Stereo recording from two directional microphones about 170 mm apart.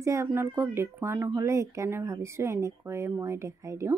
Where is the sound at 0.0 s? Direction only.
15° right (ahead or behind).